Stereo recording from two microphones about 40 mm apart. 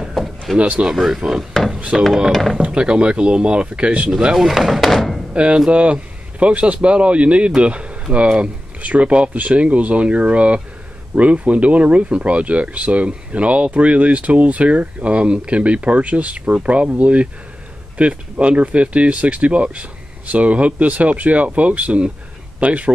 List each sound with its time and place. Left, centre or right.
0.6 s speech: right
0.9 s speech: centre
2.6 s speech: right
4.4 s speech: centre
4.8 s thunk: centre
5.3 s speech: right